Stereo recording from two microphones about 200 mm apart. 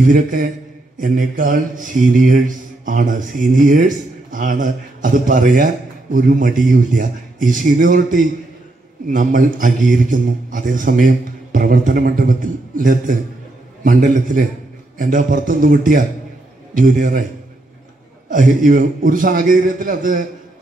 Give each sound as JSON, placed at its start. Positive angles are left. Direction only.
{"t": 0.0, "sound": "a man's voice", "side_deg": -40}
{"t": 18.3, "sound": "a man's voice", "side_deg": -40}